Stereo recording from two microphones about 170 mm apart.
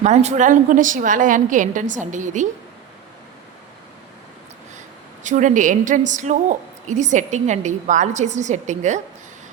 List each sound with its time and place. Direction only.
0.0 s a woman's voice: 40° right (ahead or behind)
5.2 s a woman's voice: 45° right (ahead or behind)